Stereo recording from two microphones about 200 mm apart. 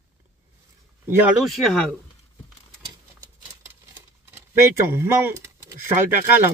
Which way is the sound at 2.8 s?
20° right (ahead or behind).